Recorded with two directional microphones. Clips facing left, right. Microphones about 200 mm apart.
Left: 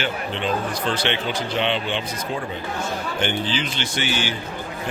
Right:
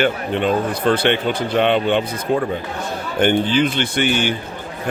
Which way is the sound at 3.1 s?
55° right (ahead or behind).